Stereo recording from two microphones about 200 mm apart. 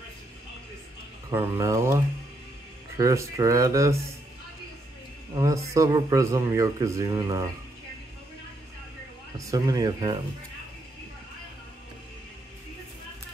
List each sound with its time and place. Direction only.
1.3 s speech: 15° right (ahead or behind)
3.0 s speech: 15° right (ahead or behind)
5.3 s speech: 15° right (ahead or behind)
9.5 s speech: 20° right (ahead or behind)